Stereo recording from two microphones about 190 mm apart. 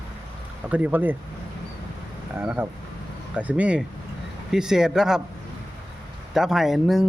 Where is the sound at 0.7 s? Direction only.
10° right (ahead or behind).